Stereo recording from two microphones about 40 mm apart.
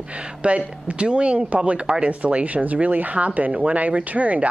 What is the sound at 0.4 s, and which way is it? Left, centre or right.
Speech, right.